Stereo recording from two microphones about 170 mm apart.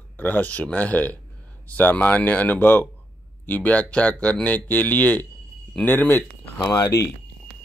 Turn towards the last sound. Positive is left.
turn(degrees=20)  # may be behind; listen again after turning